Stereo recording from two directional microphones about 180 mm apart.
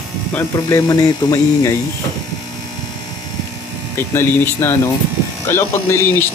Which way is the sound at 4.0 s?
15° left (ahead or behind).